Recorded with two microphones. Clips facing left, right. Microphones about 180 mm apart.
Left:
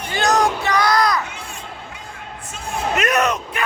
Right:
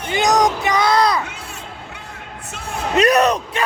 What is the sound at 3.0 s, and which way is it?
Bellow, 35° right (ahead or behind).